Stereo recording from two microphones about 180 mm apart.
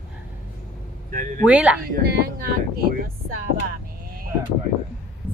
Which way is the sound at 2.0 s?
55° right (ahead or behind).